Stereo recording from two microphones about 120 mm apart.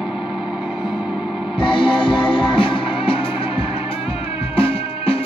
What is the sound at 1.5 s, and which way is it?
Music, 45° left (ahead or behind).